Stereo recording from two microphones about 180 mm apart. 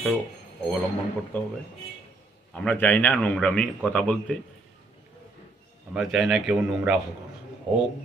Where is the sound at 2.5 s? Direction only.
10° left (ahead or behind).